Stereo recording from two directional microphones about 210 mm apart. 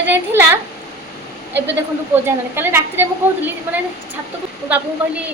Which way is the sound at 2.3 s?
10° right (ahead or behind).